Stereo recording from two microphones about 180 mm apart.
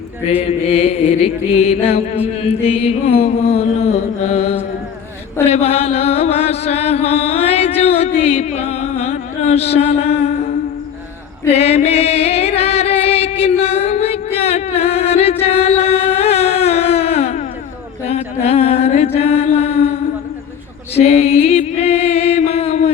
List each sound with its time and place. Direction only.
0.3 s music: 35° left (ahead or behind)
11.4 s female singing: 35° left (ahead or behind)
14.3 s singing: 35° left (ahead or behind)
18.1 s mantra: 35° left (ahead or behind)
20.9 s mantra: 35° left (ahead or behind)